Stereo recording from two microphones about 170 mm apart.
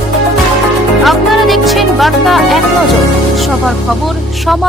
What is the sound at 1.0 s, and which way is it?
Music, centre (ahead or behind).